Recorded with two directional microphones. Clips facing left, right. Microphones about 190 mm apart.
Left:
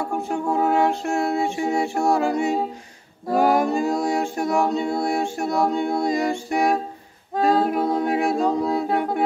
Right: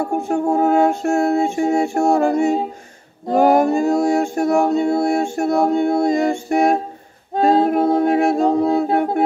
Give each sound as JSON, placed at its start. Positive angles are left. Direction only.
{"t": 0.0, "sound": "music", "side_deg": -45}
{"t": 2.1, "sound": "a sound", "side_deg": -45}
{"t": 7.3, "sound": "a capella", "side_deg": -25}
{"t": 7.6, "sound": "music", "side_deg": -55}
{"t": 8.6, "sound": "music", "side_deg": -25}
{"t": 8.9, "sound": "humming", "side_deg": -50}